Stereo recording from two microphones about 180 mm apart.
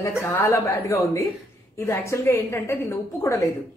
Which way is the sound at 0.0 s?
15° left (ahead or behind).